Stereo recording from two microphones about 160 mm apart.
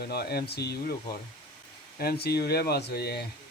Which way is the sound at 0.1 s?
75° left (ahead or behind).